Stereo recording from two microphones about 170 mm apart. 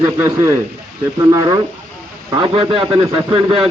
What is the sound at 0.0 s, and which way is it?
A man's voice, 20° right (ahead or behind).